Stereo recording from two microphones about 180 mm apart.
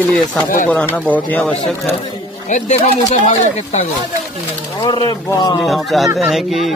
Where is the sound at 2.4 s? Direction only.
45° left (ahead or behind).